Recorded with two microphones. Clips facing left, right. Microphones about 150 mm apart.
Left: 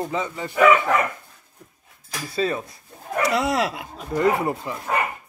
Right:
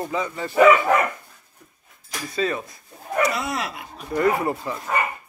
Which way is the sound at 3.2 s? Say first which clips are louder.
Left 4 dB; 90° left.